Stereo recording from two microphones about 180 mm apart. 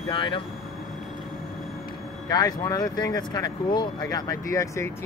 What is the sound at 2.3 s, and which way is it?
Speech, 20° left (ahead or behind).